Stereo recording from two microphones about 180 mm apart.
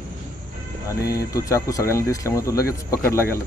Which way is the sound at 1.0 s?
20° left (ahead or behind).